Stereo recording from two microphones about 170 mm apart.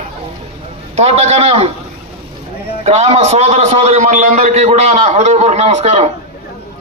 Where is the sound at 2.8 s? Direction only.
40° right (ahead or behind).